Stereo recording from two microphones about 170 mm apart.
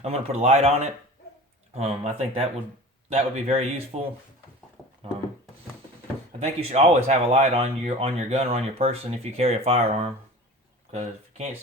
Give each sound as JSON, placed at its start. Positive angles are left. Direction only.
{"t": 0.0, "sound": "speech", "side_deg": -35}
{"t": 4.8, "sound": "a sound", "side_deg": 20}
{"t": 6.4, "sound": "speech", "side_deg": -40}